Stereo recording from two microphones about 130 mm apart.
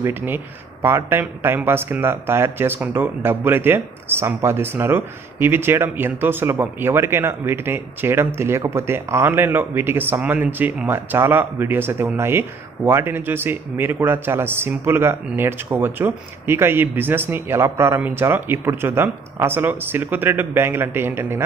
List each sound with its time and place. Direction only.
0.0 s a man's voice: 15° right (ahead or behind)